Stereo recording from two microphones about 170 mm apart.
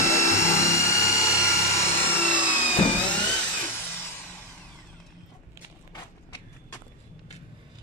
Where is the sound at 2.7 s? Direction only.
30° left (ahead or behind).